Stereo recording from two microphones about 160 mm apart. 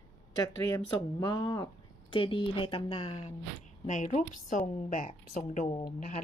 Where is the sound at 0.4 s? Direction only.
20° left (ahead or behind).